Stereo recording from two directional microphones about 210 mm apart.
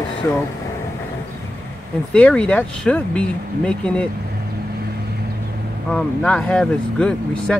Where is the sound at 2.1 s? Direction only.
5° left (ahead or behind).